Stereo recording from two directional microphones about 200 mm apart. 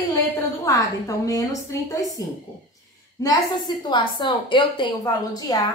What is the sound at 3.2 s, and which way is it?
A woman's voice, 20° left (ahead or behind).